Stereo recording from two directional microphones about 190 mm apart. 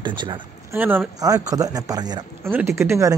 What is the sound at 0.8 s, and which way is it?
Speech, 10° right (ahead or behind).